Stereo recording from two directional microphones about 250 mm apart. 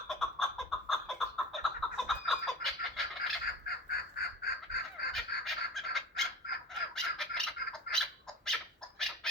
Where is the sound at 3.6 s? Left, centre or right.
Left.